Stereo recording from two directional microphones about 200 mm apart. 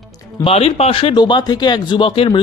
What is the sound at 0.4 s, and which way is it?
Speech, 30° left (ahead or behind).